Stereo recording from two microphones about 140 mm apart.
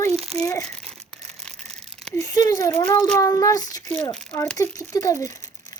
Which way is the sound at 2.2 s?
25° left (ahead or behind).